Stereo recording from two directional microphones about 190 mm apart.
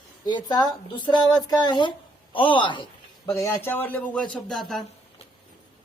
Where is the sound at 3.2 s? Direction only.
15° left (ahead or behind).